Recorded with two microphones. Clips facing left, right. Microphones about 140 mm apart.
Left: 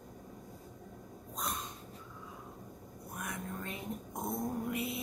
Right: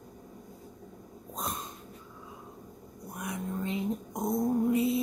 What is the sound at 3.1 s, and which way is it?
Vehicle, 20° right (ahead or behind).